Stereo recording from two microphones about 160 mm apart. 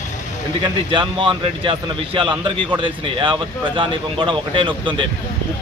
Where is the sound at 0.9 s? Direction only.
35° right (ahead or behind).